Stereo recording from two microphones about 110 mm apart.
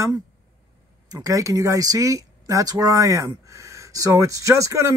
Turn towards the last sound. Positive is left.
turn(degrees=-30)  # may be behind; listen again after turning